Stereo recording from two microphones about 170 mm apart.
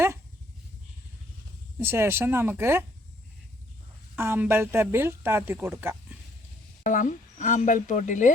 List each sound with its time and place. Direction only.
1.8 s speech: 15° right (ahead or behind)
4.1 s speech: 15° right (ahead or behind)
6.8 s speech: 50° left (ahead or behind)